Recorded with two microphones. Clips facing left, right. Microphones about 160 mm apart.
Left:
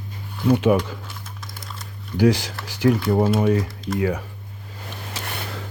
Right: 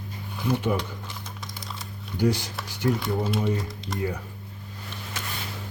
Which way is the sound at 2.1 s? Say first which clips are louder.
Left 6 dB; 90° left.